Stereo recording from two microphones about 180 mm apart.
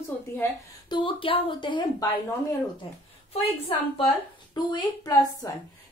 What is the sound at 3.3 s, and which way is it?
A woman's voice, 30° left (ahead or behind).